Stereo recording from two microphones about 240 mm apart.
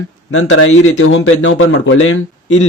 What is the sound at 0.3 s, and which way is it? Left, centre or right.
Speech, left.